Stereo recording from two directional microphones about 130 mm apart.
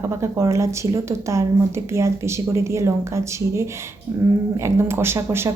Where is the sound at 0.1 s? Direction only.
20° right (ahead or behind).